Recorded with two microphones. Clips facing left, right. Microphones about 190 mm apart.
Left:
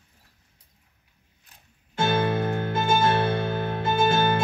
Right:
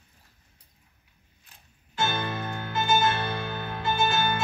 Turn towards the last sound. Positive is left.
turn(degrees=55)  # may be behind; listen again after turning